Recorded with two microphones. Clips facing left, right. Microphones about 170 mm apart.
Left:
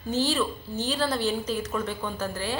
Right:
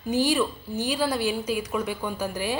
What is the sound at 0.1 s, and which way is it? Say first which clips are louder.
A woman's voice: right 3 dB; 15° right (ahead or behind).